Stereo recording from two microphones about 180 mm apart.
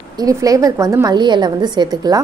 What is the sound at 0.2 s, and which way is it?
A woman's voice, 20° right (ahead or behind).